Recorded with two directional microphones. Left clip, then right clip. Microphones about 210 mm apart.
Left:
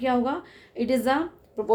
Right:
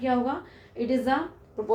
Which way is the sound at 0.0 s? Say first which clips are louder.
Left 2 dB; 55° left (ahead or behind).